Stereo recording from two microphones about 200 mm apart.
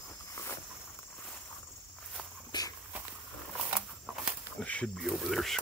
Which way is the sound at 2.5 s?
20° left (ahead or behind).